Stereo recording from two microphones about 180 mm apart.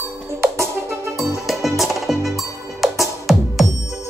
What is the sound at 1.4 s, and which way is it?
Music, centre (ahead or behind).